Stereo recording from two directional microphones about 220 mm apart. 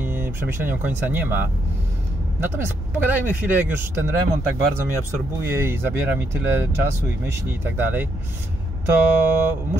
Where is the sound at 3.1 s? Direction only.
5° right (ahead or behind).